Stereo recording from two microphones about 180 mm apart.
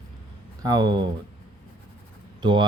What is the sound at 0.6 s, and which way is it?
Speech, 20° right (ahead or behind).